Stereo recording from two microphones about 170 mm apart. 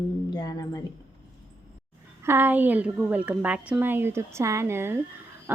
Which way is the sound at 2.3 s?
10° right (ahead or behind).